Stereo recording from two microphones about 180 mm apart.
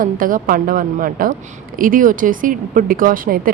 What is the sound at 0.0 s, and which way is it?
A woman's voice, 50° right (ahead or behind).